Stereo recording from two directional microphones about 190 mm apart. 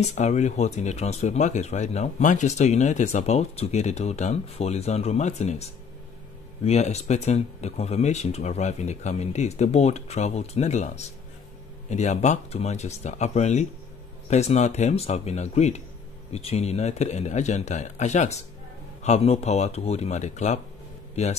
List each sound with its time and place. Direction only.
0.0 s speech: 35° left (ahead or behind)